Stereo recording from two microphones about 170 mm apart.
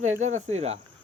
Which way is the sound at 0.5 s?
40° right (ahead or behind).